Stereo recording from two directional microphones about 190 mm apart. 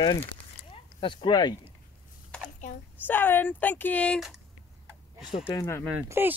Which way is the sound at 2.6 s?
40° left (ahead or behind).